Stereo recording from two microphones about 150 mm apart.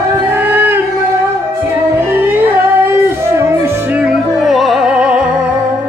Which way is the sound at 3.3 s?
15° right (ahead or behind).